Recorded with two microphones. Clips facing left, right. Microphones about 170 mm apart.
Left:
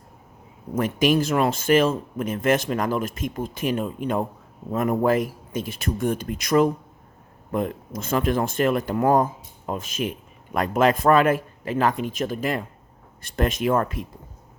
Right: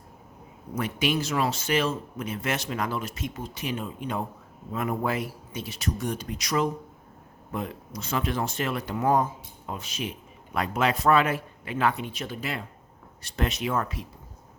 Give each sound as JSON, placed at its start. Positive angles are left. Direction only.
{"t": 0.8, "sound": "speech", "side_deg": 45}